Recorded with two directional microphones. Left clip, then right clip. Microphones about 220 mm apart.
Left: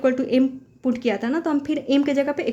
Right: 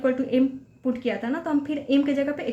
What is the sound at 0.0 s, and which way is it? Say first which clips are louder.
A woman's voice: left 3 dB; 45° left (ahead or behind).